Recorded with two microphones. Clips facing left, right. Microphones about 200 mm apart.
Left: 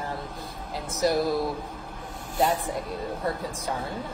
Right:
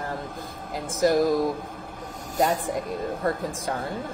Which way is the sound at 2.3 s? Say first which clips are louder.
Right 1 dB; 40° right (ahead or behind).